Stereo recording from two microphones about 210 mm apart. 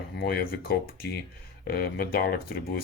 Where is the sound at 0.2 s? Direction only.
45° left (ahead or behind).